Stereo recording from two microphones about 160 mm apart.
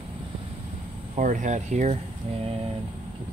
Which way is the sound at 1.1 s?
50° right (ahead or behind).